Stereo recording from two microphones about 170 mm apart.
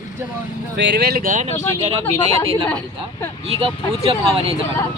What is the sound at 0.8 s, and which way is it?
Speech, 80° right.